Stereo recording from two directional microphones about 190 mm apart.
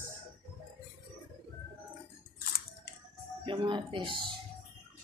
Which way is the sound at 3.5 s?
25° right (ahead or behind).